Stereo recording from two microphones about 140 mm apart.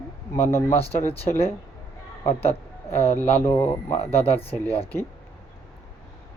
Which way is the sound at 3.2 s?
15° left (ahead or behind).